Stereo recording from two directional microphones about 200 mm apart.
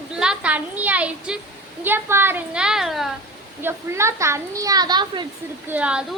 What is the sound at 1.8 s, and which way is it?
A woman's voice, 10° right (ahead or behind).